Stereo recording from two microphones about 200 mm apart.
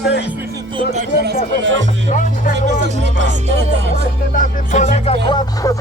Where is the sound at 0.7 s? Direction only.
30° right (ahead or behind).